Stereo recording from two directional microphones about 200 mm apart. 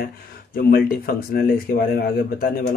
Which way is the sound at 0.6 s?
45° left (ahead or behind).